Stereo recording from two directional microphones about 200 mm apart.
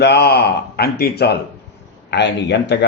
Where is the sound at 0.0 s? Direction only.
55° left (ahead or behind).